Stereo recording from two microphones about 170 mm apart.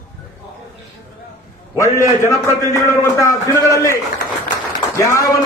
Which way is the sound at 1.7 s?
15° left (ahead or behind).